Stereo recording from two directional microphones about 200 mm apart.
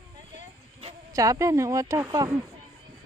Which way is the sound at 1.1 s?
15° right (ahead or behind).